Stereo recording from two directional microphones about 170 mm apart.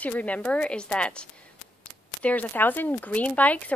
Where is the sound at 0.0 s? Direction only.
10° left (ahead or behind).